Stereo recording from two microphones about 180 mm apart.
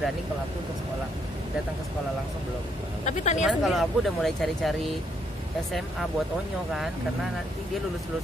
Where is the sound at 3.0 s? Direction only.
40° left (ahead or behind).